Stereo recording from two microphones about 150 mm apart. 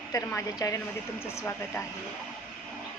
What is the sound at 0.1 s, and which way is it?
A woman's voice, 20° left (ahead or behind).